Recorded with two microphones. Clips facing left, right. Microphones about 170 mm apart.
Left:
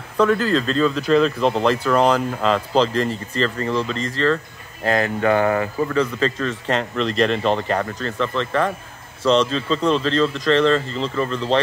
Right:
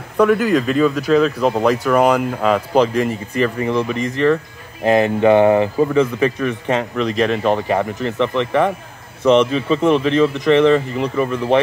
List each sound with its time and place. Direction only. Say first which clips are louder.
0.2 s speech: right 3 dB; 15° right (ahead or behind)